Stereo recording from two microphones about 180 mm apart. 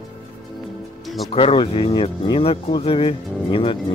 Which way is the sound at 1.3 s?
30° left (ahead or behind).